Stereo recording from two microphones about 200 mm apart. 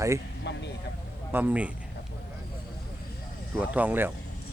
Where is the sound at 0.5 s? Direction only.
60° left (ahead or behind).